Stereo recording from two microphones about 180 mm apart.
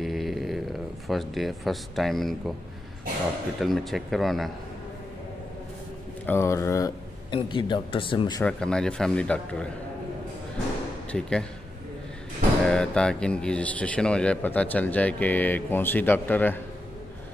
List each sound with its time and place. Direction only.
0.0 s a sound: centre (ahead or behind)
1.0 s speech: centre (ahead or behind)
3.5 s speech: centre (ahead or behind)
6.2 s speech: 15° left (ahead or behind)
8.5 s speech: 5° left (ahead or behind)
11.1 s speech: 5° left (ahead or behind)
12.6 s a man's voice: 5° left (ahead or behind)